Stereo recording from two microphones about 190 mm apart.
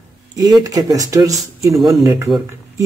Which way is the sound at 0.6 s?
20° right (ahead or behind).